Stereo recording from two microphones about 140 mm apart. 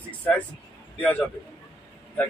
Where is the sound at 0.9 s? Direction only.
10° left (ahead or behind).